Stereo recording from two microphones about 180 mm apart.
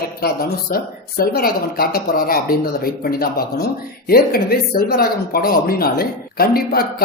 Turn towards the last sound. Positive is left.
turn(degrees=55)  # may be behind; listen again after turning